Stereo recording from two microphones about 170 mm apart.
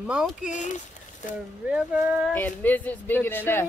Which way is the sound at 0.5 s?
45° left (ahead or behind).